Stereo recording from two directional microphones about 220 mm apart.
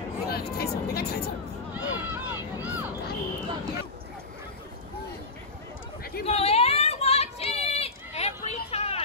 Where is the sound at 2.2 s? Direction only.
10° right (ahead or behind).